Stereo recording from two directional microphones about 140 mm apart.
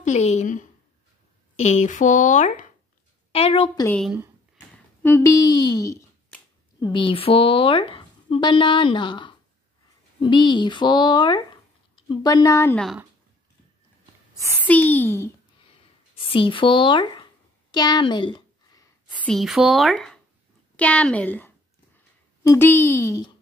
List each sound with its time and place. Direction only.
0.0 s speech: 55° left (ahead or behind)
3.3 s a woman's voice: 45° left (ahead or behind)
4.6 s speech: 15° left (ahead or behind)
6.8 s a woman's voice: 35° left (ahead or behind); by 12.7 s 20° left (ahead or behind)
12.7 s speech: centre (ahead or behind)
14.7 s a child's voice: 10° left (ahead or behind)
16.2 s a sound: 40° left (ahead or behind)
19.2 s a woman's voice: centre (ahead or behind); by 23.3 s 25° left (ahead or behind)